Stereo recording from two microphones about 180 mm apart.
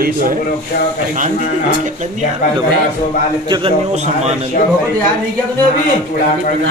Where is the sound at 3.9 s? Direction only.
40° right (ahead or behind).